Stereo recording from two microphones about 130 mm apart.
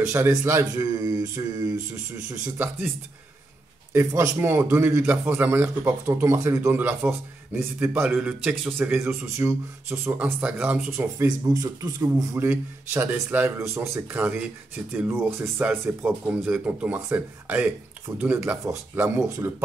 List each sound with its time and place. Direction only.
0.0 s speech: 20° right (ahead or behind)
3.9 s a man's voice: 20° right (ahead or behind)